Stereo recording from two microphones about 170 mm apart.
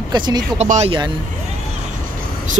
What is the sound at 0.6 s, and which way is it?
Speech, 40° right (ahead or behind).